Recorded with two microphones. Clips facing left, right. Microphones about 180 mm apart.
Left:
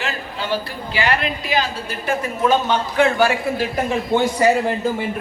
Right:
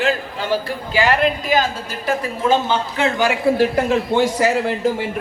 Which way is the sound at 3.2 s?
90° right.